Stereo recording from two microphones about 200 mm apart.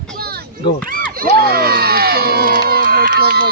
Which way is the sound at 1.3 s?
50° right (ahead or behind).